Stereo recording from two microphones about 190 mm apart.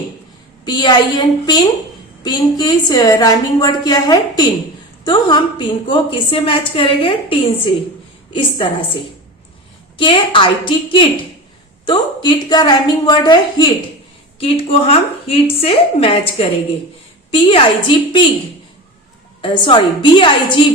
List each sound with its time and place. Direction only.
0.6 s a woman's voice: 25° left (ahead or behind)
10.0 s a woman's voice: 25° left (ahead or behind)
19.4 s a woman's voice: 25° left (ahead or behind)